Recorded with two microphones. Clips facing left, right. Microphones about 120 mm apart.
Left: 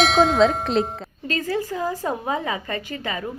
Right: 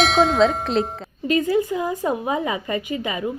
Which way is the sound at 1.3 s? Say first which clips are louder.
Right 6 dB; 20° right (ahead or behind).